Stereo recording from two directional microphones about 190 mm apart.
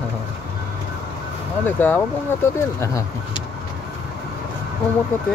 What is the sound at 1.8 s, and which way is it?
Speech, 10° left (ahead or behind).